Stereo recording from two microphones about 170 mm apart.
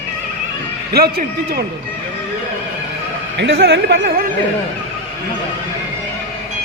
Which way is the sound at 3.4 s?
75° right (ahead or behind).